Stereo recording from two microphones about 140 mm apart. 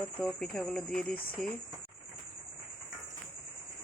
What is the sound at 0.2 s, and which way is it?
Speech, 5° left (ahead or behind).